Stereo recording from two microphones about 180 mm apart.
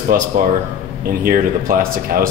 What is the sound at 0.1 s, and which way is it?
A man's voice, 50° right (ahead or behind).